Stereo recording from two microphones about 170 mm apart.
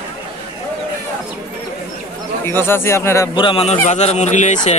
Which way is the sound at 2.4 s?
15° left (ahead or behind).